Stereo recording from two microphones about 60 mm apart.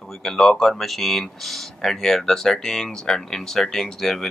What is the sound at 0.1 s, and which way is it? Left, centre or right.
Speech, centre.